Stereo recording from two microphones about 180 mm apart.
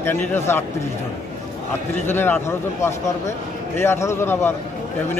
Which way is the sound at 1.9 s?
10° left (ahead or behind).